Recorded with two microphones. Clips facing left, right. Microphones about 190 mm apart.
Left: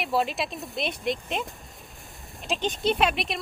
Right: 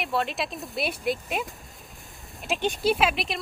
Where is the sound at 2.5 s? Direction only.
5° right (ahead or behind).